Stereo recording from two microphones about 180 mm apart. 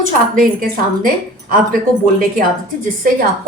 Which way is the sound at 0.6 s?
50° right (ahead or behind).